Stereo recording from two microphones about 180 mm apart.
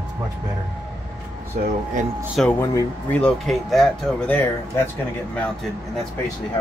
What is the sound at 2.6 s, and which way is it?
Speech, 15° left (ahead or behind).